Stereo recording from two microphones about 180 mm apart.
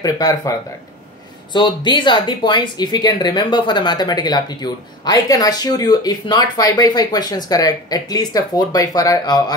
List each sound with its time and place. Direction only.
0.0 s speech: 20° left (ahead or behind)